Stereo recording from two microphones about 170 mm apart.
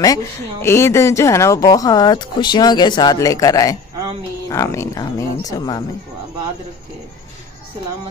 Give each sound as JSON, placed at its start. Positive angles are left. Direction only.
{"t": 0.0, "sound": "speech", "side_deg": 20}